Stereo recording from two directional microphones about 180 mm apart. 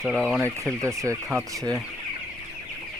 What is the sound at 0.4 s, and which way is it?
Speech, 15° right (ahead or behind).